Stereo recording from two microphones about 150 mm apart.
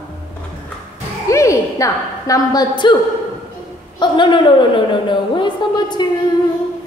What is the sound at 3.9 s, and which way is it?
A woman's voice, 30° left (ahead or behind).